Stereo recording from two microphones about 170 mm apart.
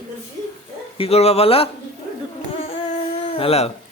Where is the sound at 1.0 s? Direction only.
35° left (ahead or behind).